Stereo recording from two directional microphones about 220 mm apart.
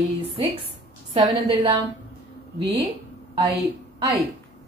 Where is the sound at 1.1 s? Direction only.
20° right (ahead or behind).